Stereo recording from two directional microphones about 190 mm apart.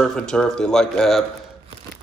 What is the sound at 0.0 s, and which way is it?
Speech, 5° left (ahead or behind).